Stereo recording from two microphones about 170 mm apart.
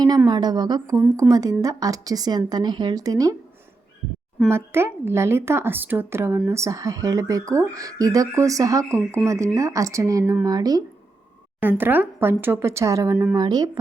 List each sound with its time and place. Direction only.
0.3 s speech: 25° right (ahead or behind)
0.9 s speech: 10° right (ahead or behind)
1.3 s speech: 20° right (ahead or behind)
4.4 s speech: 15° right (ahead or behind)
11.6 s speech: 10° right (ahead or behind)